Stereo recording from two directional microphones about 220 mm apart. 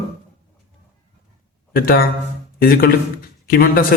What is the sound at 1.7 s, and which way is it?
A man's voice, 40° left (ahead or behind).